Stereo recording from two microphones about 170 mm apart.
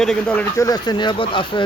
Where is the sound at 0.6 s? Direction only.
20° left (ahead or behind).